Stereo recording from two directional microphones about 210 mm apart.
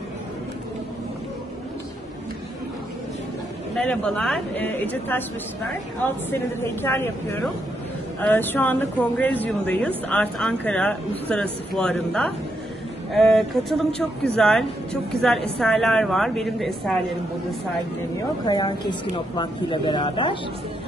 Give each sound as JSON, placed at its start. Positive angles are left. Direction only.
{"t": 3.7, "sound": "speech", "side_deg": 5}
{"t": 6.3, "sound": "a woman's voice", "side_deg": 10}
{"t": 18.4, "sound": "a woman's voice", "side_deg": 20}